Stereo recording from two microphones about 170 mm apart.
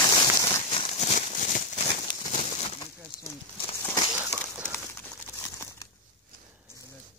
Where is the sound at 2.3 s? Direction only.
35° left (ahead or behind).